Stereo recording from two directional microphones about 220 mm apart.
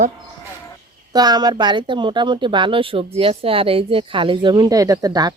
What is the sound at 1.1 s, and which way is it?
Speech, 20° right (ahead or behind).